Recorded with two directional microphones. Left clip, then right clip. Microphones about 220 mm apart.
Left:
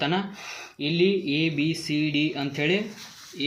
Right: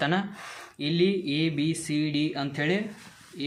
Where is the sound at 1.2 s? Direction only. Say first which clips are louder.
Left 2 dB; 45° right (ahead or behind).